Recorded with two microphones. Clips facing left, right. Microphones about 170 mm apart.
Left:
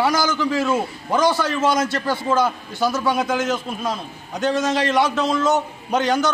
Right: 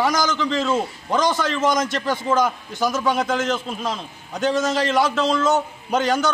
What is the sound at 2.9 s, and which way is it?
A man's voice, 10° left (ahead or behind).